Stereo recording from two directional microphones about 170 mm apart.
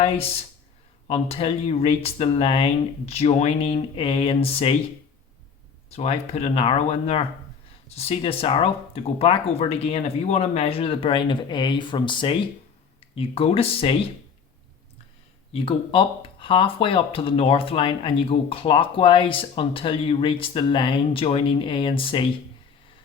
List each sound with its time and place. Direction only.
0.0 s speech: 35° left (ahead or behind)
5.9 s speech: 35° left (ahead or behind)
15.5 s speech: 30° left (ahead or behind)